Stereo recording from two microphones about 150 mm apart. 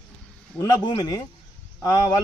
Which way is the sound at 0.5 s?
25° left (ahead or behind).